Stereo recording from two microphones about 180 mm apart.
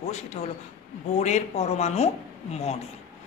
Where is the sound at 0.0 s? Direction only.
40° left (ahead or behind).